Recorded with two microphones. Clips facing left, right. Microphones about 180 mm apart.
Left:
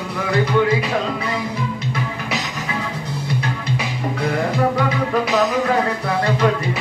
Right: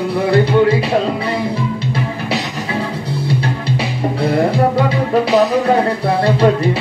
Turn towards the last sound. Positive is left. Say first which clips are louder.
# right 5 dB
turn(degrees=-30)  # may be behind; listen again after turning